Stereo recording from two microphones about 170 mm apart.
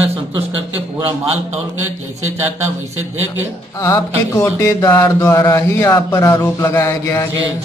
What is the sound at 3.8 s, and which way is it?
Mantra, 15° left (ahead or behind).